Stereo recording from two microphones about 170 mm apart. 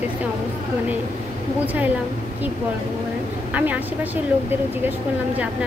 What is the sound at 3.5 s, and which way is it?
Speech, 10° right (ahead or behind).